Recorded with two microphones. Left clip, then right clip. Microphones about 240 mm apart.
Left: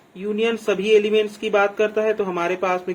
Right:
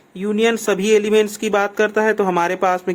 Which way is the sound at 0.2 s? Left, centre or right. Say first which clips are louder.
Right 4 dB; right.